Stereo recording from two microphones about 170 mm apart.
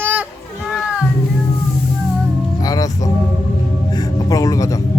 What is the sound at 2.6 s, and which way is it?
Music, 20° left (ahead or behind).